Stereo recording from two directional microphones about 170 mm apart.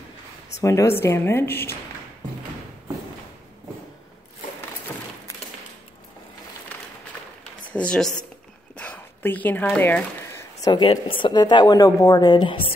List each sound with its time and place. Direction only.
0.6 s speech: 15° left (ahead or behind)
7.7 s speech: 5° left (ahead or behind)
8.7 s a sound: 10° left (ahead or behind)
9.8 s speech: 10° left (ahead or behind)
10.6 s a woman's voice: 30° left (ahead or behind)